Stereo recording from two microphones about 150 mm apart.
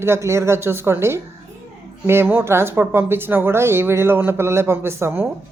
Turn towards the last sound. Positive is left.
turn(degrees=-15)  # may be behind; listen again after turning